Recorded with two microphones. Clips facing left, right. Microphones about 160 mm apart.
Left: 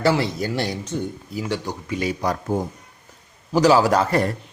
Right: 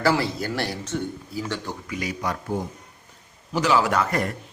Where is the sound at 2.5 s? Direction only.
45° left (ahead or behind).